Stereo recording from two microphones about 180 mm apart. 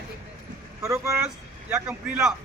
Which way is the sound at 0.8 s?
15° right (ahead or behind).